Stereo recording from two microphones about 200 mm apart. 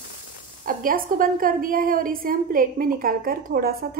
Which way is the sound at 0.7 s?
45° right (ahead or behind).